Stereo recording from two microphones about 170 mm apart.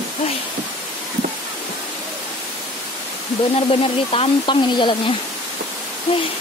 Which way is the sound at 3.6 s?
35° left (ahead or behind).